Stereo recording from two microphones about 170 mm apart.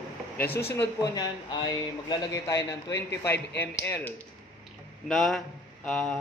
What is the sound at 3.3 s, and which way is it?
Speech, 85° left.